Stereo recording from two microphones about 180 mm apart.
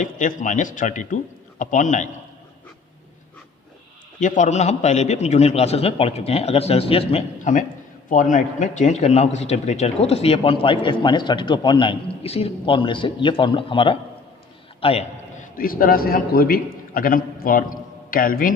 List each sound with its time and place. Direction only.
0.0 s a man's voice: 45° left (ahead or behind)
4.2 s a man's voice: 45° left (ahead or behind)
15.5 s a man's voice: 50° left (ahead or behind)